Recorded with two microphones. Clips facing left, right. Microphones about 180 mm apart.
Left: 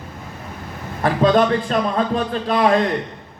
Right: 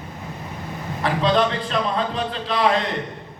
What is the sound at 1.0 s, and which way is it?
A man's voice, 50° left (ahead or behind).